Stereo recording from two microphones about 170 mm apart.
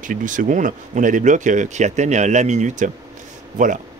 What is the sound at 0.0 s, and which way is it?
Speech, 50° right (ahead or behind).